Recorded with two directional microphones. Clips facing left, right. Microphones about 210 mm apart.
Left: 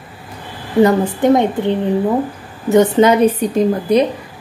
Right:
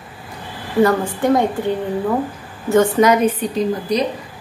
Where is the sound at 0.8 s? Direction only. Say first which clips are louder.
Left 5 dB; 20° left (ahead or behind); by 4.0 s 45° left (ahead or behind).